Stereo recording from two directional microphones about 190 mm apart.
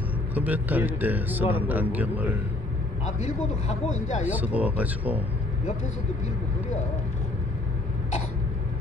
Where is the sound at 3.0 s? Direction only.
35° left (ahead or behind).